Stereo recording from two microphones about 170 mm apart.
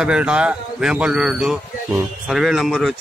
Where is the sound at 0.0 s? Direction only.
5° right (ahead or behind).